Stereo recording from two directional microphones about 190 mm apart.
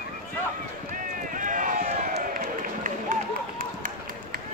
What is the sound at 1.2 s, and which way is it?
Run, 45° right (ahead or behind).